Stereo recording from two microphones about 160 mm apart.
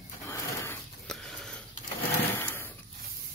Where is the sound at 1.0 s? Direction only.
5° left (ahead or behind).